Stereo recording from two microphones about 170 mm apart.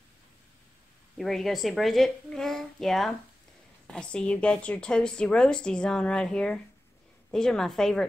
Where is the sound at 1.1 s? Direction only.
Centre (ahead or behind).